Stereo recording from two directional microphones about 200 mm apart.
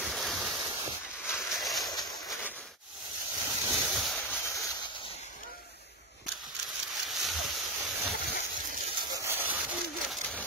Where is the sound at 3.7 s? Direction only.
Centre (ahead or behind).